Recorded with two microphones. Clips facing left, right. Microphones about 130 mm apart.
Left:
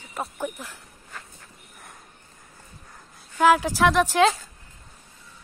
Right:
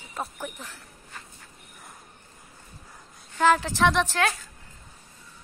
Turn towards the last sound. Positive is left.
turn(degrees=5)  # may be behind; listen again after turning